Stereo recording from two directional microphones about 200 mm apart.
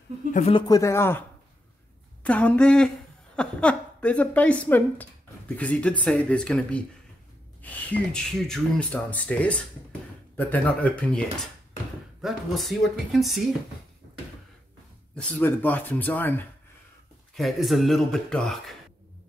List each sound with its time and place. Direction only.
0.3 s speech: 30° left (ahead or behind); by 1.2 s 10° left (ahead or behind)
2.2 s speech: 5° left (ahead or behind)
15.1 s speech: 10° left (ahead or behind)